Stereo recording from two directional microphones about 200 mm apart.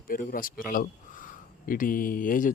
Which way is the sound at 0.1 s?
45° left (ahead or behind).